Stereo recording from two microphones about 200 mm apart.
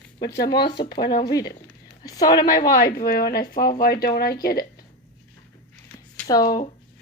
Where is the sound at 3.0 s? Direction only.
50° left (ahead or behind).